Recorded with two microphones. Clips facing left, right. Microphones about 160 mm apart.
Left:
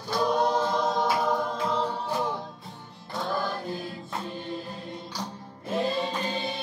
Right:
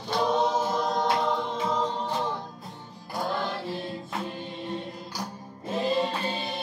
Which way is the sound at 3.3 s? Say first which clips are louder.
Left 2 dB; 20° right (ahead or behind).